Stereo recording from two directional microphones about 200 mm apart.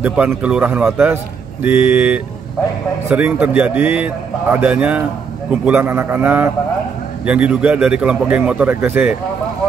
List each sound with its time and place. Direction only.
0.0 s a man's voice: 5° right (ahead or behind)